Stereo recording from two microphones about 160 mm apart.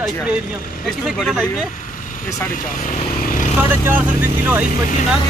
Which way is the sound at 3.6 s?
10° right (ahead or behind).